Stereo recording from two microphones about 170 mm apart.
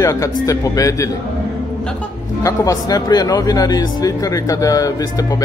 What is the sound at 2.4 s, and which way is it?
Speech, 20° left (ahead or behind).